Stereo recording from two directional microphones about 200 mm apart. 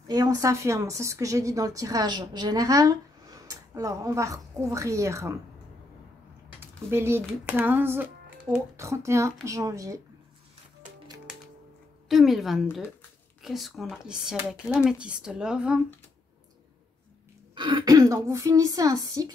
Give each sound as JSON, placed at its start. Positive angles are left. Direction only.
{"t": 0.1, "sound": "a woman's voice", "side_deg": -20}
{"t": 6.6, "sound": "a woman's voice", "side_deg": -10}
{"t": 11.3, "sound": "music", "side_deg": 0}
{"t": 12.1, "sound": "speech", "side_deg": 0}
{"t": 17.6, "sound": "a woman's voice", "side_deg": -20}